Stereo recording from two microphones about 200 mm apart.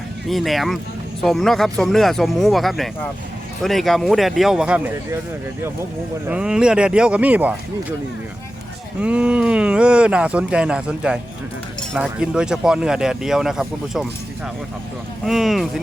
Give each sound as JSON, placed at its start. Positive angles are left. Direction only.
{"t": 0.3, "sound": "speech", "side_deg": 0}
{"t": 6.2, "sound": "speech", "side_deg": -5}
{"t": 9.0, "sound": "speech", "side_deg": -5}
{"t": 15.2, "sound": "speech", "side_deg": 0}